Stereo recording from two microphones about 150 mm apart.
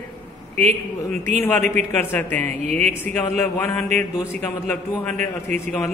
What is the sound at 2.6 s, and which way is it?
Speech, 50° right (ahead or behind).